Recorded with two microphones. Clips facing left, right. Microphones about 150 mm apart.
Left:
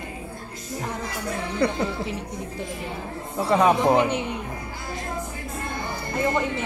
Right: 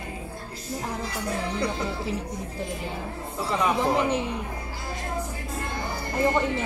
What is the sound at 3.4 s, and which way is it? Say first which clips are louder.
Speech: left 6 dB; 65° left (ahead or behind).